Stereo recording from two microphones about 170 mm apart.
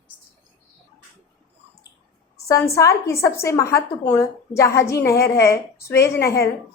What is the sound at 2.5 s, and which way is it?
A woman's voice, 20° left (ahead or behind).